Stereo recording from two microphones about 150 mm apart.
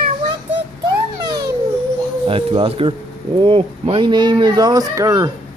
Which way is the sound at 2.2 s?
40° right (ahead or behind).